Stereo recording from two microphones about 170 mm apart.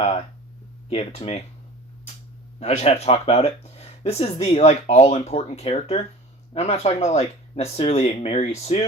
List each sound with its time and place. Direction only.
0.0 s speech: 40° left (ahead or behind)
2.6 s speech: 40° left (ahead or behind)